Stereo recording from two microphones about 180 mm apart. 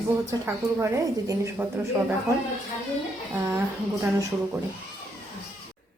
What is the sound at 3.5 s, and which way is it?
Speech, 15° right (ahead or behind).